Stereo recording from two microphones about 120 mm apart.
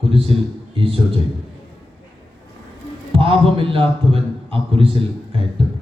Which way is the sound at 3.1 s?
50° right (ahead or behind).